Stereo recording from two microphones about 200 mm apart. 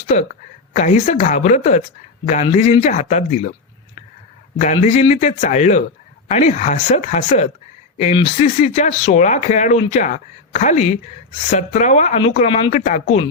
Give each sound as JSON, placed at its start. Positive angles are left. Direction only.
{"t": 0.1, "sound": "speech", "side_deg": 40}
{"t": 4.5, "sound": "speech", "side_deg": 35}